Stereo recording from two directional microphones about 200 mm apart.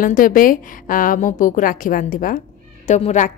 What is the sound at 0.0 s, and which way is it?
A woman's voice, 45° left (ahead or behind).